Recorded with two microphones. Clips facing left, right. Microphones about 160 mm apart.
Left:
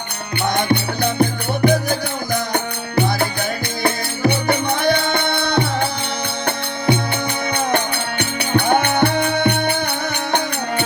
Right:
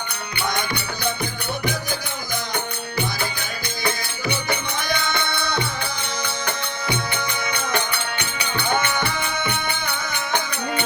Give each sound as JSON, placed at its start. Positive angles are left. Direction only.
{"t": 0.4, "sound": "music", "side_deg": 60}